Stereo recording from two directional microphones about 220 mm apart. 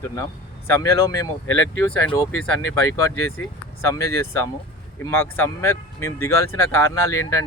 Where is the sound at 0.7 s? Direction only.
10° left (ahead or behind).